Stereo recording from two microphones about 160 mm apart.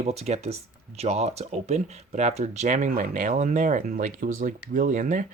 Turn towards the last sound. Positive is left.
turn(degrees=-55)  # may be behind; listen again after turning